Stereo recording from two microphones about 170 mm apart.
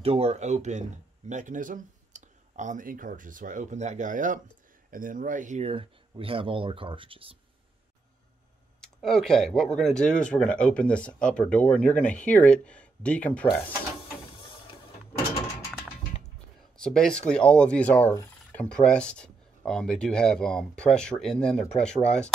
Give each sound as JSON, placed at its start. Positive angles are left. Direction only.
{"t": 0.0, "sound": "speech", "side_deg": -35}
{"t": 8.8, "sound": "speech", "side_deg": 5}
{"t": 16.8, "sound": "speech", "side_deg": 5}